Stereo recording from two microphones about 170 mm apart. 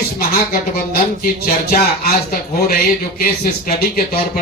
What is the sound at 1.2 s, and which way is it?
Speech, 60° left (ahead or behind).